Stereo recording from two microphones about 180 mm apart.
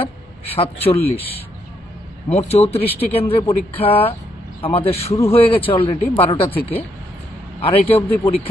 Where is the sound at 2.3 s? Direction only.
35° left (ahead or behind).